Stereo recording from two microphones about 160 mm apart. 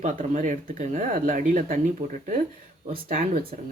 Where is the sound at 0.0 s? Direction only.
50° right (ahead or behind).